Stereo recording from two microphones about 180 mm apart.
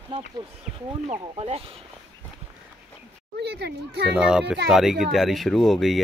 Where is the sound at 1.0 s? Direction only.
35° right (ahead or behind).